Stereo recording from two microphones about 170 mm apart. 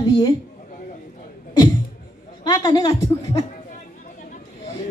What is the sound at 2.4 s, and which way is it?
Speech, 25° left (ahead or behind).